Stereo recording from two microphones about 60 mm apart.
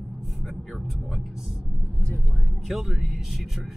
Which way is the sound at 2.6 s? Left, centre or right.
Centre.